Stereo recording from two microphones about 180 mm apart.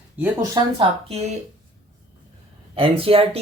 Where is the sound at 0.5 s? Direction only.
30° right (ahead or behind).